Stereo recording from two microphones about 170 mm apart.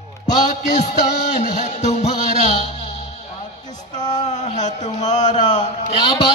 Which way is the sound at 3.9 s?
25° left (ahead or behind).